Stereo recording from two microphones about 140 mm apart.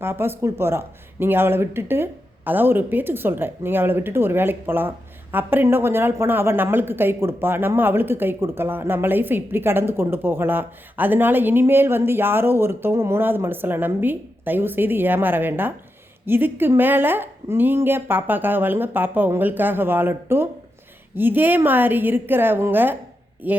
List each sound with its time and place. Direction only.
0.0 s speech: 15° right (ahead or behind)